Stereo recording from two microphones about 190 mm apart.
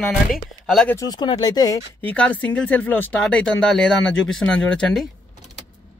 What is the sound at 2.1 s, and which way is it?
Speech, 5° left (ahead or behind).